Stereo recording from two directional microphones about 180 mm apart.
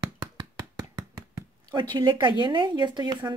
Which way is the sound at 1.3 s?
20° right (ahead or behind).